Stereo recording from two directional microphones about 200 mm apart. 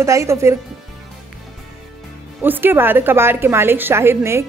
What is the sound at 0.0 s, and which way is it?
Speech, 15° right (ahead or behind).